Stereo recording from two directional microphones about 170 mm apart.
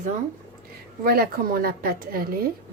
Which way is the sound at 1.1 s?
65° right (ahead or behind).